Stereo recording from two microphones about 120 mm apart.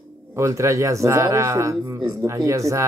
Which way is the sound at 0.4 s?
25° right (ahead or behind).